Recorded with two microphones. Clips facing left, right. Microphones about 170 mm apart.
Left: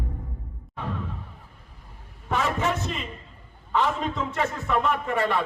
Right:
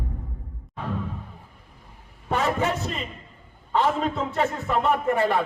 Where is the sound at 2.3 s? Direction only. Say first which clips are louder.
Right 2 dB; 35° right (ahead or behind).